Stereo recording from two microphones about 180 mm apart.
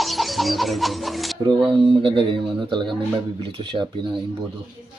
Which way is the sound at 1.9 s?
30° right (ahead or behind).